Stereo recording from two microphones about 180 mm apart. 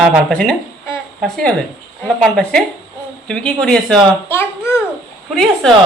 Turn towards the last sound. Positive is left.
turn(degrees=0)  # may be behind; listen again after turning